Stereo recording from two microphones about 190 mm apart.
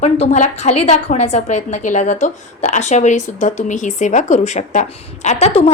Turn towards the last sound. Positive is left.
turn(degrees=35)  # may be behind; listen again after turning